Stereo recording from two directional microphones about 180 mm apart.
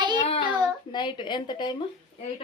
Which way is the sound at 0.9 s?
25° left (ahead or behind).